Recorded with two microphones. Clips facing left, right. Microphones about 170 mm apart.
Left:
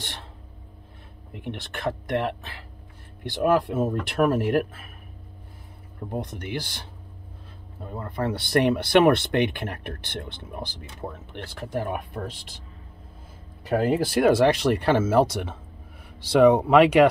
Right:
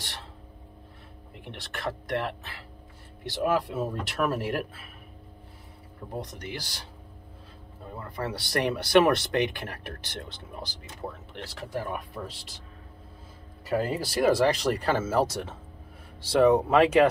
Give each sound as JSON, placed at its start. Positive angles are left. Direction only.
{"t": 1.3, "sound": "speech", "side_deg": 55}
{"t": 6.2, "sound": "speech", "side_deg": 55}
{"t": 8.0, "sound": "speech", "side_deg": 55}
{"t": 13.7, "sound": "speech", "side_deg": 55}
{"t": 16.3, "sound": "speech", "side_deg": 80}